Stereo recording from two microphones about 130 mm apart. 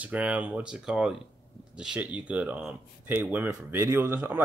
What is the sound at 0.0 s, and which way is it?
Speech, 10° right (ahead or behind).